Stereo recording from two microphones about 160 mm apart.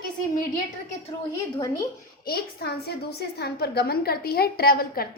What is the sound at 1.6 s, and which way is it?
Speech, 20° left (ahead or behind).